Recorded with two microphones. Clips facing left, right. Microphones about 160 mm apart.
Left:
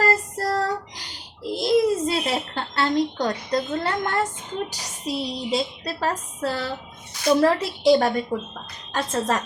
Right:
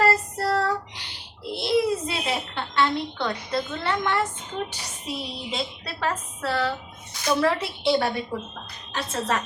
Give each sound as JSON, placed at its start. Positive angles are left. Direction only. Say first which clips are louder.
{"t": 0.0, "sound": "child singing", "louder": "even", "side_deg": 40}
{"t": 4.7, "sound": "a woman's voice", "louder": "left 5 dB", "side_deg": 40}